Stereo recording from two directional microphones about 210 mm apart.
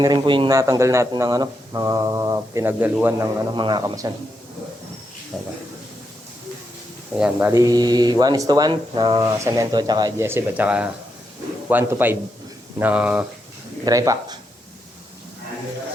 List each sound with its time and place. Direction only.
0.0 s speech: 20° right (ahead or behind)
3.5 s a man's voice: 20° right (ahead or behind)
5.3 s speech: 5° right (ahead or behind)
7.2 s speech: 10° right (ahead or behind)